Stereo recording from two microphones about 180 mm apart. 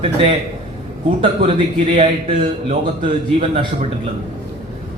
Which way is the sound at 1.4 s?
40° right (ahead or behind).